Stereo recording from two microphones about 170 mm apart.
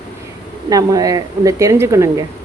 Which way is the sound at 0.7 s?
20° right (ahead or behind).